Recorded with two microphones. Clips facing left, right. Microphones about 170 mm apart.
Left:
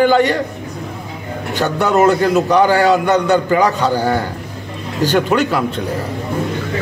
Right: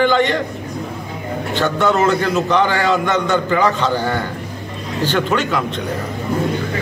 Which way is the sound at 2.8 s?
40° left (ahead or behind).